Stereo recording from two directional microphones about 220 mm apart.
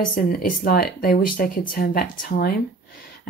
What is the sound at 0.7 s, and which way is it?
Speech, 40° left (ahead or behind).